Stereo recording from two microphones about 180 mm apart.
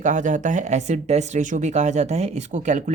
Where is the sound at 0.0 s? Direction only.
45° right (ahead or behind).